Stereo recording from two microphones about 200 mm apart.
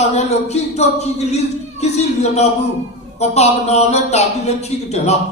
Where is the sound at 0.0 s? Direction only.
35° left (ahead or behind).